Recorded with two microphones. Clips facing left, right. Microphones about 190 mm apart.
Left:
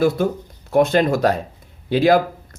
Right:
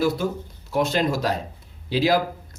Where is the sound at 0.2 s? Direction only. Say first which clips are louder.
Left 5 dB; 55° left (ahead or behind).